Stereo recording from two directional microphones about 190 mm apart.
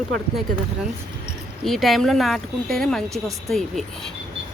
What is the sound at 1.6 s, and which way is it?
Speech, centre (ahead or behind).